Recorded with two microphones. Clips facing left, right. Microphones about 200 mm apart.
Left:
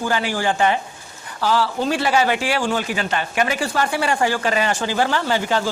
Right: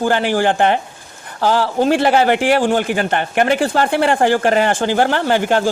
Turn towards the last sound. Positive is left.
turn(degrees=-55)  # may be behind; listen again after turning